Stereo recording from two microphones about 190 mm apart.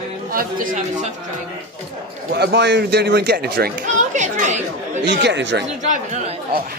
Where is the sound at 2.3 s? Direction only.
65° right (ahead or behind).